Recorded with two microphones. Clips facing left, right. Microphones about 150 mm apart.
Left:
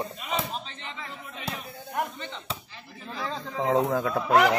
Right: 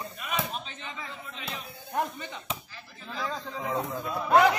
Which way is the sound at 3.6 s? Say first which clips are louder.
Left 9 dB; 90° left.